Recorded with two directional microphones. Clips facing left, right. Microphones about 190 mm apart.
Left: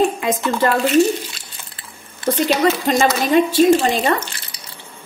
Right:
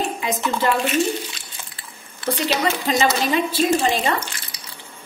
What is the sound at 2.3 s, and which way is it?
Speech, 45° left (ahead or behind).